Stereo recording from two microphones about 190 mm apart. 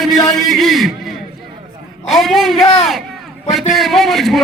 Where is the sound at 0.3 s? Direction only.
Centre (ahead or behind).